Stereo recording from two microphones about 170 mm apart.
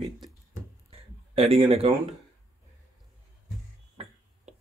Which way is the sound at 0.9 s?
35° right (ahead or behind).